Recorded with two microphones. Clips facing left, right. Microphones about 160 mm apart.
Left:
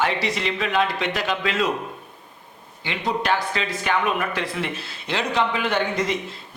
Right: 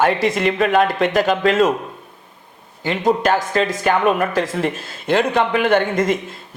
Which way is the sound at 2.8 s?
45° right (ahead or behind).